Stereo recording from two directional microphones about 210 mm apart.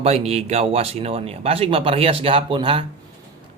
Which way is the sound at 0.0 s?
30° right (ahead or behind).